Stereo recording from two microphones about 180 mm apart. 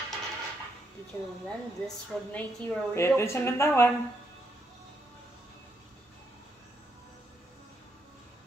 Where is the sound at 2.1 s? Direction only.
Centre (ahead or behind).